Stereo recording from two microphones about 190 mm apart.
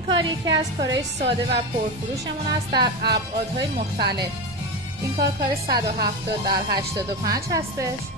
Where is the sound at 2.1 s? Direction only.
20° right (ahead or behind).